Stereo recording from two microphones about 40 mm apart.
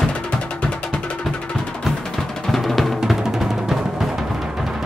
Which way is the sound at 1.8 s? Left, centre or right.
Centre.